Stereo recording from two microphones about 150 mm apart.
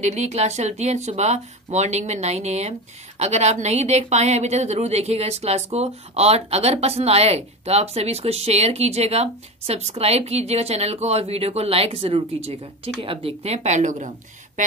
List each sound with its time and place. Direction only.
0.0 s a woman's voice: 50° right (ahead or behind)